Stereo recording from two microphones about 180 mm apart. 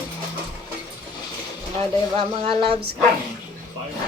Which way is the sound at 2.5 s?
30° right (ahead or behind).